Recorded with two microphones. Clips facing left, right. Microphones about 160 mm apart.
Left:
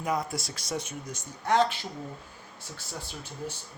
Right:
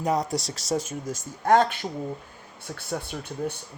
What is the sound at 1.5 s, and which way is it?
Speech, 50° right (ahead or behind).